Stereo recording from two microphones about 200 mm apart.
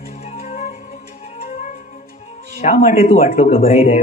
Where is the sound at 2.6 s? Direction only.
35° left (ahead or behind).